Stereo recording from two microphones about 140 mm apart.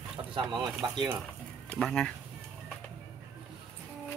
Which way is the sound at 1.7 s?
5° left (ahead or behind).